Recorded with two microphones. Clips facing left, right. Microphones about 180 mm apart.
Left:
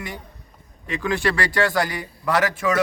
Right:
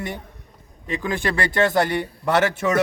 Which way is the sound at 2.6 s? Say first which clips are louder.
Right 1 dB; 30° right (ahead or behind).